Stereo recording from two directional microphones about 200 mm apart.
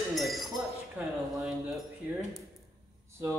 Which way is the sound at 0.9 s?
5° right (ahead or behind).